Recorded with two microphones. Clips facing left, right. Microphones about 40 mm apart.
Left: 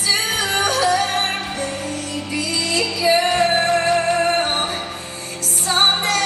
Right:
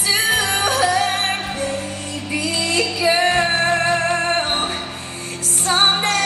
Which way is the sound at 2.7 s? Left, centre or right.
Centre.